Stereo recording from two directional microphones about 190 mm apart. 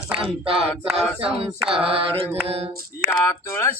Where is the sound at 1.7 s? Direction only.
30° right (ahead or behind).